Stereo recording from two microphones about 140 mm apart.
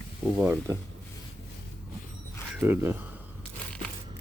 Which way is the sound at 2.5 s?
15° right (ahead or behind).